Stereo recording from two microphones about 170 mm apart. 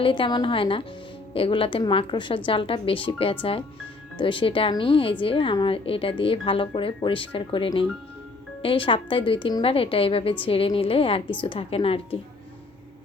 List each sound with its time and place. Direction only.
0.0 s a woman's voice: 30° left (ahead or behind)